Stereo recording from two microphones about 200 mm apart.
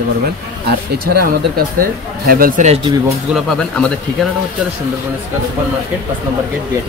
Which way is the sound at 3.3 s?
Centre (ahead or behind).